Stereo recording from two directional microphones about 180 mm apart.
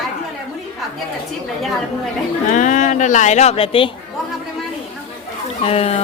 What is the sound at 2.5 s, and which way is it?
Speech, 45° left (ahead or behind).